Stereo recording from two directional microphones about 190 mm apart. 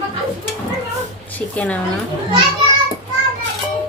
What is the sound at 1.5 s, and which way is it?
Speech, 5° left (ahead or behind).